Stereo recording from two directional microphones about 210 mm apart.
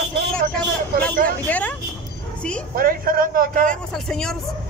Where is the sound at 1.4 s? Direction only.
10° left (ahead or behind).